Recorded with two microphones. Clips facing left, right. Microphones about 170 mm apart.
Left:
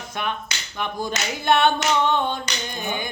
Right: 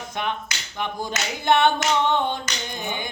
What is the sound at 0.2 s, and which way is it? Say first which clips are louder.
Hands: even; 20° right (ahead or behind).